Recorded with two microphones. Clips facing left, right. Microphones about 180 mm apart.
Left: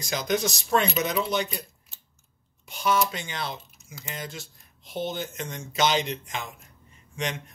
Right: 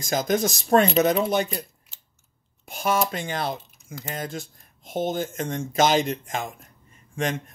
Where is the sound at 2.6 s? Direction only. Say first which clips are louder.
Right 1 dB; 50° right (ahead or behind).